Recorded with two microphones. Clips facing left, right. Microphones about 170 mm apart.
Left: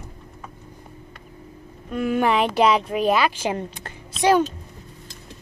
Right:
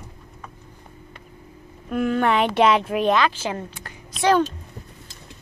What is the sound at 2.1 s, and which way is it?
A woman's voice, 5° left (ahead or behind).